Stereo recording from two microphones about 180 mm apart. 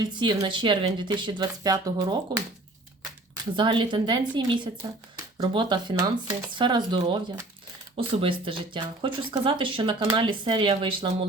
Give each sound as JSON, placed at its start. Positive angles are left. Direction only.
{"t": 0.0, "sound": "speech", "side_deg": -25}
{"t": 3.5, "sound": "speech", "side_deg": -25}